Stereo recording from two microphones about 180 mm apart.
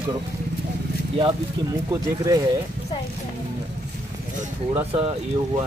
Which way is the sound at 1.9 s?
20° right (ahead or behind).